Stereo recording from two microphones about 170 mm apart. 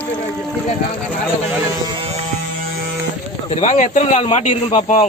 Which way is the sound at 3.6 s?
50° left (ahead or behind).